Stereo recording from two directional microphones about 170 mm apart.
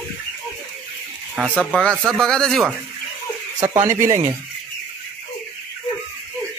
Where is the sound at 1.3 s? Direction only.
5° left (ahead or behind).